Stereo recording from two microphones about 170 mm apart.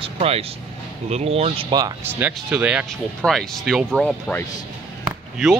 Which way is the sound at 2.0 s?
10° right (ahead or behind).